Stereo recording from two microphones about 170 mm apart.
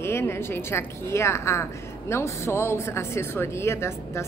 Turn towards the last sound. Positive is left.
turn(degrees=15)  # may be behind; listen again after turning